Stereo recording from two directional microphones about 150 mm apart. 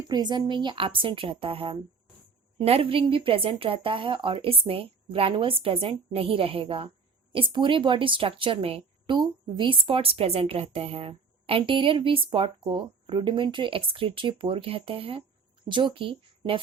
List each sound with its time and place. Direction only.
0.1 s a woman's voice: 30° right (ahead or behind)